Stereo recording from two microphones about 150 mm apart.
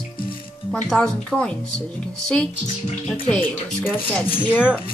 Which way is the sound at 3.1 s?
5° left (ahead or behind).